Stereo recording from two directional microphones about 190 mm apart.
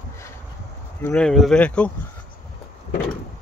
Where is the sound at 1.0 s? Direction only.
5° left (ahead or behind).